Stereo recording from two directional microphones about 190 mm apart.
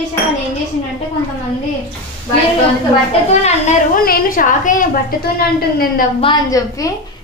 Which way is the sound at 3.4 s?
35° left (ahead or behind).